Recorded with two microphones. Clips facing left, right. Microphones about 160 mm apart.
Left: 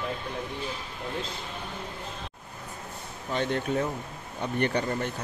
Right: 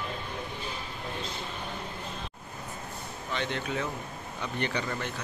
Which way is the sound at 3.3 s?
45° left (ahead or behind).